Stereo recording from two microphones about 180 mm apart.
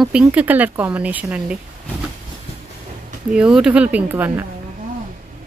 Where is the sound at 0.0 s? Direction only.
5° right (ahead or behind).